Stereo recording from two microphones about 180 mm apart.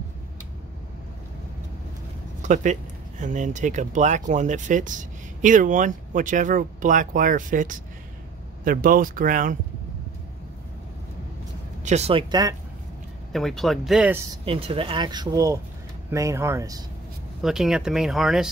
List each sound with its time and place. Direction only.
2.4 s speech: 40° right (ahead or behind)
11.8 s speech: 35° right (ahead or behind); by 12.5 s 20° right (ahead or behind)
13.3 s speech: centre (ahead or behind)
14.4 s speech: 30° right (ahead or behind)
17.4 s speech: centre (ahead or behind)